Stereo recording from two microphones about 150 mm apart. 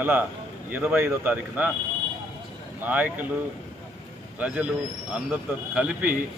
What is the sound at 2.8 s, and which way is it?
Speech, 10° right (ahead or behind).